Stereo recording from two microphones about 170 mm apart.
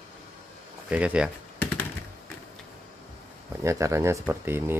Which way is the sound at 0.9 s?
5° right (ahead or behind).